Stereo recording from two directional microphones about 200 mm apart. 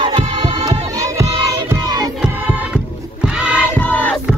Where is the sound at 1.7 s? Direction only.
20° right (ahead or behind).